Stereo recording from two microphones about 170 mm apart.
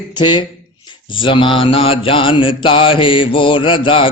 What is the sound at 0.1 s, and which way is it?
Mantra, 25° left (ahead or behind).